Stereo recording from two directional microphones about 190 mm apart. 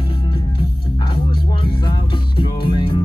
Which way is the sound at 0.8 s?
25° left (ahead or behind).